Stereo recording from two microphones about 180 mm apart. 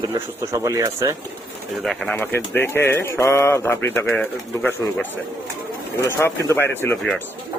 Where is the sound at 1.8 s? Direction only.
Centre (ahead or behind).